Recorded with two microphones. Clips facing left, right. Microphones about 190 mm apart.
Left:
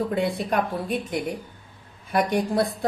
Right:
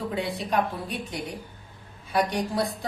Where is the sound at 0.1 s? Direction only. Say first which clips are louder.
Left 4 dB; 50° left (ahead or behind).